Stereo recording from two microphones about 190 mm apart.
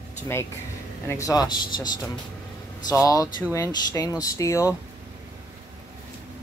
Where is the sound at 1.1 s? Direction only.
15° left (ahead or behind).